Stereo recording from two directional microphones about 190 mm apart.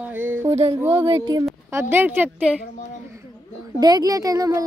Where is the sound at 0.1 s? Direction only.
10° right (ahead or behind).